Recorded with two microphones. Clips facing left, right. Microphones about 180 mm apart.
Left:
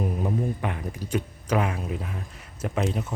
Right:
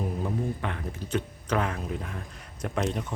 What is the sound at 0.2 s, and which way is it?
Speech, 15° left (ahead or behind).